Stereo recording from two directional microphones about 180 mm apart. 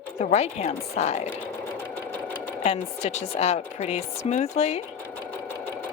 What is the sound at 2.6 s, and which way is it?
Speech, 35° left (ahead or behind).